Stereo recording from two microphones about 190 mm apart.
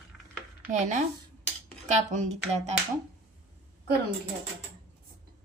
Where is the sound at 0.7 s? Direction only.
40° right (ahead or behind).